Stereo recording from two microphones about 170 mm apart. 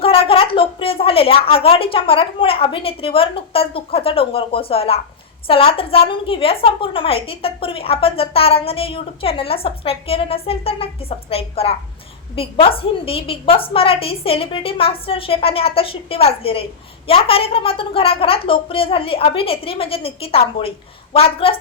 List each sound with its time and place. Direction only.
0.0 s a woman's voice: 35° left (ahead or behind)